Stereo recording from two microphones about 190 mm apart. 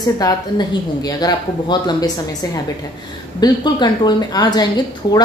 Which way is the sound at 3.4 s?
25° left (ahead or behind).